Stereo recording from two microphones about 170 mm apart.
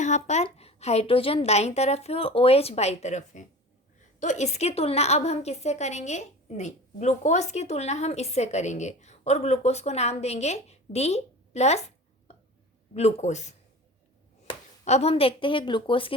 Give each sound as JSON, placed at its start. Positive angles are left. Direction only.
{"t": 0.0, "sound": "a woman's voice", "side_deg": 45}
{"t": 12.9, "sound": "a woman's voice", "side_deg": 40}